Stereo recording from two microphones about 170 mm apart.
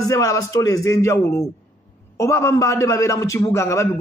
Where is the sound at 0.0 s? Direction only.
20° left (ahead or behind).